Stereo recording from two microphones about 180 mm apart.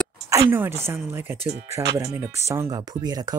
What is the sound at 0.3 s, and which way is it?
Speech, 15° right (ahead or behind).